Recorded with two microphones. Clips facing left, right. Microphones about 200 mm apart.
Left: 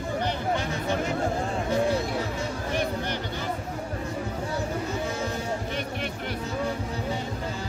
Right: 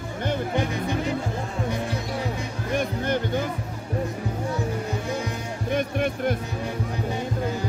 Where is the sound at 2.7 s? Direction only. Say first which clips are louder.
Right 6 dB; 50° right (ahead or behind).